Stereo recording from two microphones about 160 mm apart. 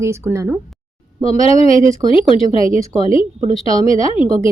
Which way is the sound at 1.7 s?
50° right (ahead or behind).